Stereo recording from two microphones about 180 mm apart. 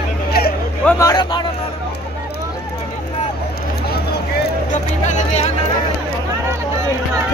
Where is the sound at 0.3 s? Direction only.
60° left (ahead or behind).